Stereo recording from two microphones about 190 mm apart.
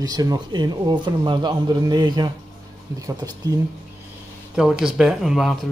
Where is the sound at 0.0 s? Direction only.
20° right (ahead or behind).